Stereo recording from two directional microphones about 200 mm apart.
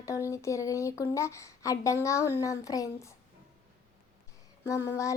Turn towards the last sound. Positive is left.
turn(degrees=15)  # may be behind; listen again after turning